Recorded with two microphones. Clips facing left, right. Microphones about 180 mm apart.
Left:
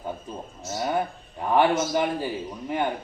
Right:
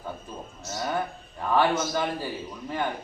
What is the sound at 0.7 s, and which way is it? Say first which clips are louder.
A man's voice: left 3 dB; 20° left (ahead or behind).